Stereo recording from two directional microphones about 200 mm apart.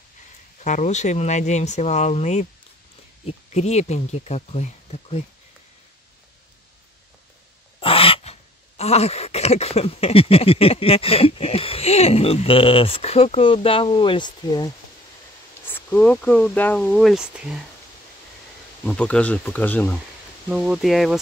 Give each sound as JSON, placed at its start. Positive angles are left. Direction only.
{"t": 0.6, "sound": "speech", "side_deg": 35}
{"t": 7.8, "sound": "a sound", "side_deg": 25}
{"t": 15.6, "sound": "speech", "side_deg": 10}
{"t": 18.9, "sound": "speech", "side_deg": 5}
{"t": 20.4, "sound": "speech", "side_deg": -5}